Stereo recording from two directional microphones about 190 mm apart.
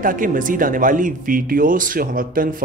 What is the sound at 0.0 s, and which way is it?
Speech, 45° right (ahead or behind).